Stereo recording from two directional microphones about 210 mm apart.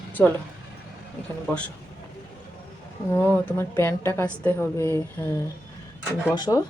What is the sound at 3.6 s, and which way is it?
A woman's voice, 10° left (ahead or behind).